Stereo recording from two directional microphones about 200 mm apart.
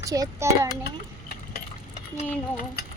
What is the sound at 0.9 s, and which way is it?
Stir, 50° left (ahead or behind).